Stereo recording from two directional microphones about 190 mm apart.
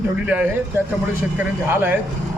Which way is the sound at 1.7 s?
10° right (ahead or behind).